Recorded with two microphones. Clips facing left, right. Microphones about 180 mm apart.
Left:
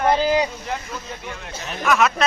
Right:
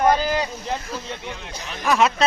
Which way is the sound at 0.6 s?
30° right (ahead or behind).